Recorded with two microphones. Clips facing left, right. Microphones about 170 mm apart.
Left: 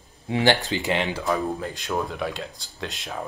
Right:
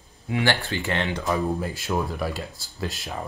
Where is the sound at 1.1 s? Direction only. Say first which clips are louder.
Even; 5° right (ahead or behind).